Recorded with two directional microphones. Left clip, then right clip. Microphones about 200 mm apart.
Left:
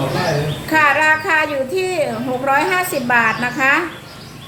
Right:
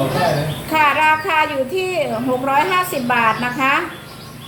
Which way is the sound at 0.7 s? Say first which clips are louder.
Left 1 dB; 15° left (ahead or behind).